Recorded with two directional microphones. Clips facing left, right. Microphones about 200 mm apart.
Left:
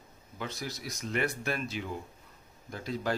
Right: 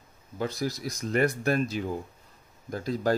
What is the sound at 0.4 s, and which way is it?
Speech, 35° right (ahead or behind).